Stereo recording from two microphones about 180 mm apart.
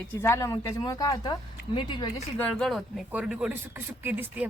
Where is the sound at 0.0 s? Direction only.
10° left (ahead or behind).